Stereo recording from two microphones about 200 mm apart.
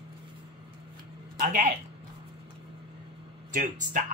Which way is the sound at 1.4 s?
40° right (ahead or behind).